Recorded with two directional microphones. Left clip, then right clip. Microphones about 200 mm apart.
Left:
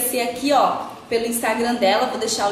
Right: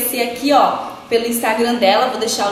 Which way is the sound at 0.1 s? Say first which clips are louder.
Right 4 dB; 10° left (ahead or behind).